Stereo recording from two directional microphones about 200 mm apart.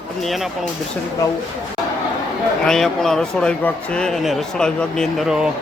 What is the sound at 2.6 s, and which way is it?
Speech, centre (ahead or behind).